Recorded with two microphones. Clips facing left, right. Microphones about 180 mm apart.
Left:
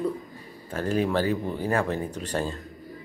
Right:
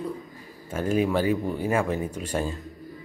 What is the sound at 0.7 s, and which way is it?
Speech, 10° right (ahead or behind).